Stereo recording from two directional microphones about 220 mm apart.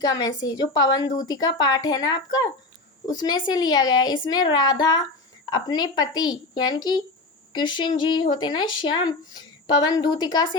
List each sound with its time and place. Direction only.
0.0 s a woman's voice: 15° left (ahead or behind)